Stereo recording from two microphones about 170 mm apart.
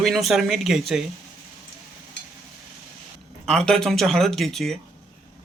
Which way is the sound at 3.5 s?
5° left (ahead or behind).